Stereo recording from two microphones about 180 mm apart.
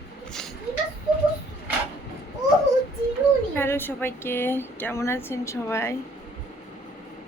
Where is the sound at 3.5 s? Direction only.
10° left (ahead or behind).